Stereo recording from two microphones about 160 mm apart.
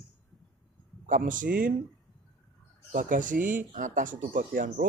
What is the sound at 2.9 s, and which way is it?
Speech, 55° right (ahead or behind).